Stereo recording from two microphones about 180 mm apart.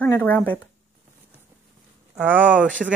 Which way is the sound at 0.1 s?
10° left (ahead or behind).